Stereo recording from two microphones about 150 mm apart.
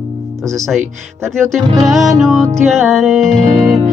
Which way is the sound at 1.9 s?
Centre (ahead or behind).